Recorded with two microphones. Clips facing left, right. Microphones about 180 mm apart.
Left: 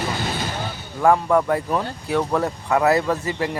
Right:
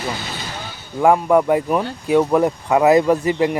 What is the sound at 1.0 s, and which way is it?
A man's voice, 15° right (ahead or behind).